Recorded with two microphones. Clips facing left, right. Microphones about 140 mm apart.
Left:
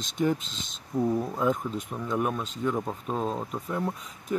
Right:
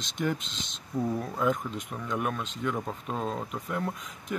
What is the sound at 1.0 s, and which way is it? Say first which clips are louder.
Speech: left 3 dB; 10° left (ahead or behind).